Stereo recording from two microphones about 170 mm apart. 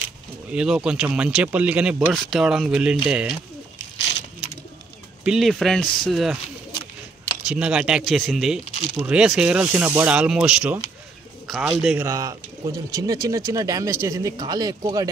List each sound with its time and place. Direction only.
0.5 s speech: 5° right (ahead or behind)
5.2 s speech: centre (ahead or behind)
7.4 s speech: 5° right (ahead or behind)
12.0 s speech: 20° right (ahead or behind)